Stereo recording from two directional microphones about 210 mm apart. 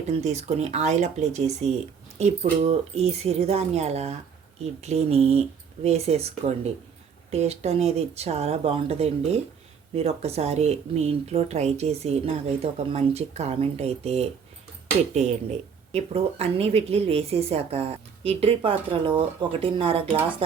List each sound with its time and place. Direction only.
0.1 s a woman's voice: 30° right (ahead or behind)